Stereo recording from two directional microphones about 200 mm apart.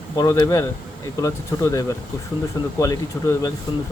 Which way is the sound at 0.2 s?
15° left (ahead or behind).